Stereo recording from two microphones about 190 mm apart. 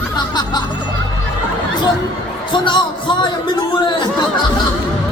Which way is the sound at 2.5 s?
25° left (ahead or behind).